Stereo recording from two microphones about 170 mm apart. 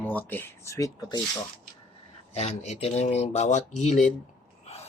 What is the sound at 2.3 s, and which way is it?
Speech, 40° left (ahead or behind).